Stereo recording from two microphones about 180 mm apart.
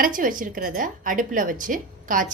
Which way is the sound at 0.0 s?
50° right (ahead or behind).